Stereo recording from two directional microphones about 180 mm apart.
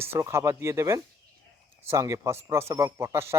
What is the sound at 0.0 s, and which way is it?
A man's voice, 15° right (ahead or behind).